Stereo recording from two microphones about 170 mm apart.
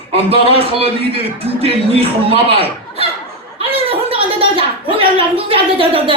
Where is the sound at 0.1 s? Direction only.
35° right (ahead or behind).